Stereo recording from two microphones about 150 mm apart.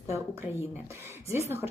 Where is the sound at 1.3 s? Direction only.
20° right (ahead or behind).